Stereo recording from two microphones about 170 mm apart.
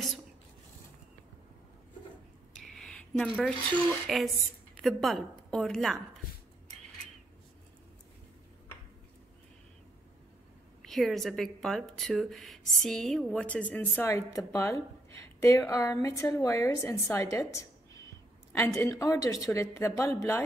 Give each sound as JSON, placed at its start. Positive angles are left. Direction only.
{"t": 2.5, "sound": "a sound", "side_deg": 0}
{"t": 3.3, "sound": "a woman's voice", "side_deg": 5}
{"t": 10.9, "sound": "speech", "side_deg": 0}